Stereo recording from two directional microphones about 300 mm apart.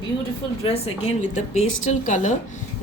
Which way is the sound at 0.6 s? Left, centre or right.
Centre.